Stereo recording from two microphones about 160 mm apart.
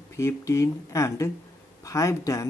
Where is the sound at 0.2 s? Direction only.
20° left (ahead or behind).